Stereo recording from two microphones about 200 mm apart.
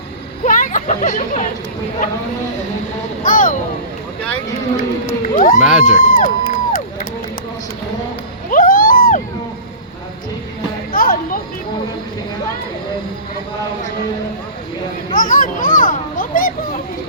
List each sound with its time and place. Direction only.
0.4 s chatter: 40° left (ahead or behind)
3.2 s speech: 40° left (ahead or behind)
5.2 s speech: 40° left (ahead or behind)
5.5 s speech: 5° right (ahead or behind)
6.0 s crowd: 45° left (ahead or behind)
8.4 s a sound: 45° left (ahead or behind)
10.9 s music: 45° left (ahead or behind)
15.1 s children playing: 40° left (ahead or behind)